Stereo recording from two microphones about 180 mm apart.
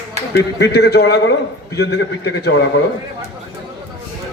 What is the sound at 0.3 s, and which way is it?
A man's voice, 65° left (ahead or behind).